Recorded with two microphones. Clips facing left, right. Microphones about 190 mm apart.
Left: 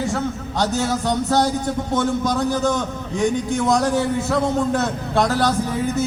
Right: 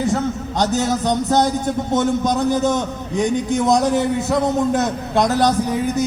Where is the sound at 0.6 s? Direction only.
20° right (ahead or behind).